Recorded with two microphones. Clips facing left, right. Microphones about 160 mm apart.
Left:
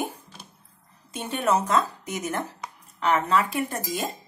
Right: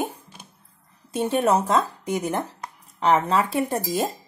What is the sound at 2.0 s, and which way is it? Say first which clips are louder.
Speech: right 5 dB; 30° right (ahead or behind).